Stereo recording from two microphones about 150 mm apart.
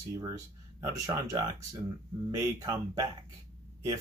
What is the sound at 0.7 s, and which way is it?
Speech, 25° right (ahead or behind).